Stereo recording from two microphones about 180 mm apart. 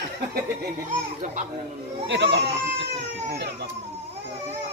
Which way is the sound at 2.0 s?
70° right (ahead or behind).